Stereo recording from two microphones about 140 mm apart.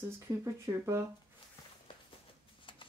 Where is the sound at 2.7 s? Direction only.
35° left (ahead or behind).